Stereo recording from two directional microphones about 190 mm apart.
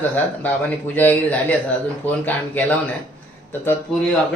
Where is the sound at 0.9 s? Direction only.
10° left (ahead or behind).